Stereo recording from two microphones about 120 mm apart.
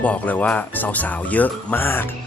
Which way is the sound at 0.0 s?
10° left (ahead or behind).